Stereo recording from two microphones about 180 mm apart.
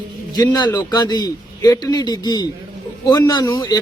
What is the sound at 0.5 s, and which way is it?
Speech, 20° left (ahead or behind).